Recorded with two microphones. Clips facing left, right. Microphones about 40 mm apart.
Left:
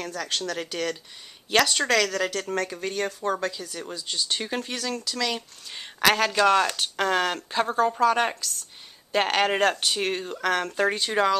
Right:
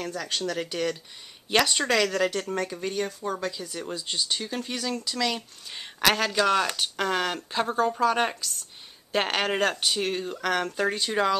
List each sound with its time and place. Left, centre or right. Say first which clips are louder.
0.0 s speech: even; centre
3.9 s speech: even; centre
4.6 s speech: left 1 dB; centre